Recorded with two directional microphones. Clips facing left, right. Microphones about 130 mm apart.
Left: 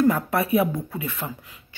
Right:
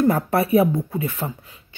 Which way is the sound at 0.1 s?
30° right (ahead or behind).